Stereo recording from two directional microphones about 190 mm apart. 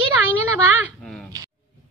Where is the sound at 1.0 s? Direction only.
Centre (ahead or behind).